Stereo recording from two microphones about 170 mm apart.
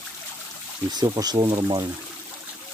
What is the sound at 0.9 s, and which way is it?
Speech, 25° right (ahead or behind).